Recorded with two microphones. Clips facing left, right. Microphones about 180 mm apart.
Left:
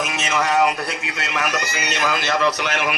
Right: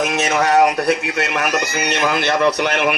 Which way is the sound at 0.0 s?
70° right (ahead or behind).